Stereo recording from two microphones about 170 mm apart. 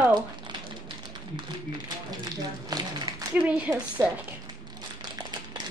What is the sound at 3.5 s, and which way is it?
Speech, 5° right (ahead or behind).